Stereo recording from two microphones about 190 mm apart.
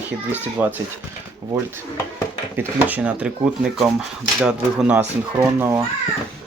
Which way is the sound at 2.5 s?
10° right (ahead or behind).